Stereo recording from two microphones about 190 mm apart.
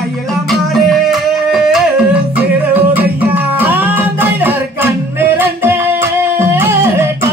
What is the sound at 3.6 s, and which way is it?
Music, 10° right (ahead or behind).